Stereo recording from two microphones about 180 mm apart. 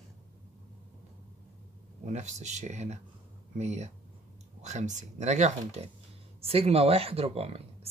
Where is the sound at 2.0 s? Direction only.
40° right (ahead or behind).